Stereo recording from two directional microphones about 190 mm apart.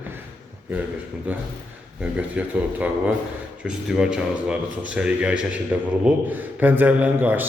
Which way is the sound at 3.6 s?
5° right (ahead or behind).